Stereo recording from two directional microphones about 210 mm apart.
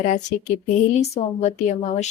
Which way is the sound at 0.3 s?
35° left (ahead or behind).